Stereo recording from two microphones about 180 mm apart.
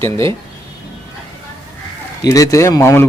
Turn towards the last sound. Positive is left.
turn(degrees=15)  # may be behind; listen again after turning